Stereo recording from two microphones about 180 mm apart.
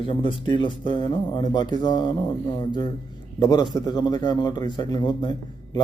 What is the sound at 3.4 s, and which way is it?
A man's voice, 25° left (ahead or behind).